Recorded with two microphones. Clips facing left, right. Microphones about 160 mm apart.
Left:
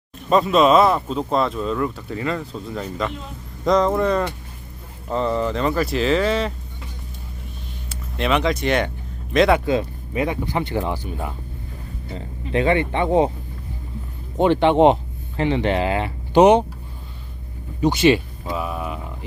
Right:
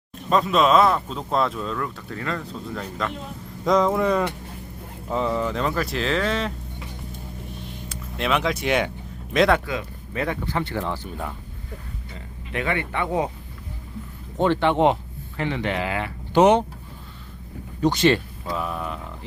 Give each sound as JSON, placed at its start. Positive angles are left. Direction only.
{"t": 0.3, "sound": "speech", "side_deg": 5}
{"t": 7.9, "sound": "speech", "side_deg": 0}
{"t": 9.6, "sound": "a sound", "side_deg": 25}
{"t": 10.2, "sound": "speech", "side_deg": 15}
{"t": 12.1, "sound": "speech", "side_deg": 30}
{"t": 14.3, "sound": "speech", "side_deg": 15}
{"t": 17.7, "sound": "speech", "side_deg": 10}